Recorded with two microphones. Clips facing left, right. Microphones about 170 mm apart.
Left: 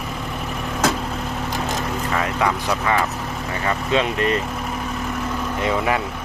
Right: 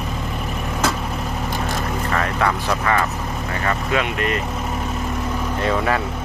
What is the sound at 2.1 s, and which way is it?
Speech, 10° left (ahead or behind).